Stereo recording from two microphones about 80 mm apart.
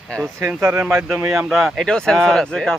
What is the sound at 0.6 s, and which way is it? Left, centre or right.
Speech, right.